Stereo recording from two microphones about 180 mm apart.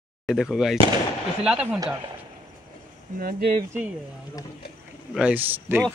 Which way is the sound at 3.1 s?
45° right (ahead or behind).